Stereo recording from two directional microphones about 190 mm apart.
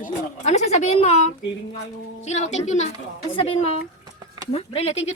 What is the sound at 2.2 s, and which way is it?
Speech, 35° left (ahead or behind).